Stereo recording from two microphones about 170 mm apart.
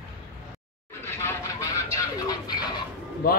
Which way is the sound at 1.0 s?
15° left (ahead or behind).